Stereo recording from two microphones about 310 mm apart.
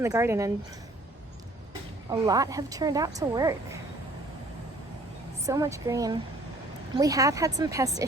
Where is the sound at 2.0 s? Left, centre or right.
Centre.